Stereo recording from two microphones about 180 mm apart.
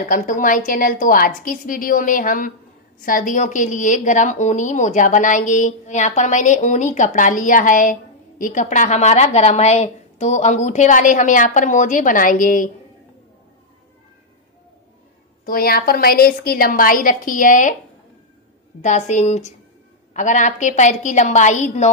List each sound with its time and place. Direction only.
0.1 s a woman's voice: 45° left (ahead or behind)
15.4 s a woman's voice: 55° left (ahead or behind)
18.8 s a woman's voice: 40° left (ahead or behind)